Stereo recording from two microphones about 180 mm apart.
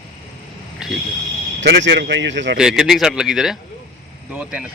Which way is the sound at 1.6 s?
75° right (ahead or behind).